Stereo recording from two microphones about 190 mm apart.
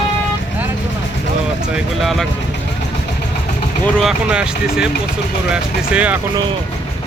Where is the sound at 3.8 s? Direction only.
Centre (ahead or behind).